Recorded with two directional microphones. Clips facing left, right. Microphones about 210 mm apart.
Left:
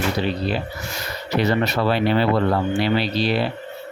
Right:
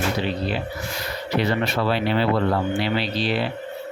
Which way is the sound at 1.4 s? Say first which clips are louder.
Left 3 dB; 40° left (ahead or behind).